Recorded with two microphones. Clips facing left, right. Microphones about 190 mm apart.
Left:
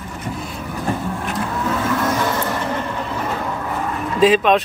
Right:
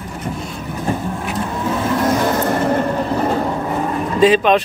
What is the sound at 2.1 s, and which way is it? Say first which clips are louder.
Vehicle: right 4 dB; 40° right (ahead or behind).